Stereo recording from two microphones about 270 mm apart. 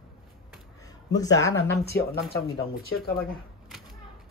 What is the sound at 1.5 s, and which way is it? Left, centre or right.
Speech, left.